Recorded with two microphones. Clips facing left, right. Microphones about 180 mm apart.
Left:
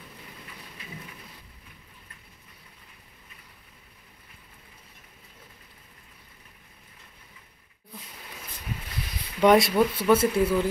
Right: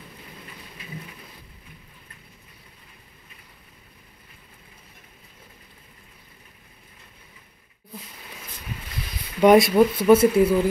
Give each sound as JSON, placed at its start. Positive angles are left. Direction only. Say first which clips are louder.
{"t": 9.4, "sound": "speech", "louder": "right 4 dB", "side_deg": -10}